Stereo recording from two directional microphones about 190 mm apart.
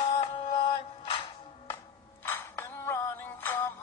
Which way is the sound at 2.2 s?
10° left (ahead or behind).